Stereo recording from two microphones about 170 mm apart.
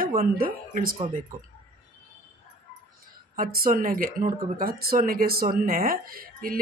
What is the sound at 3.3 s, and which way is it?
Speech, 55° right (ahead or behind).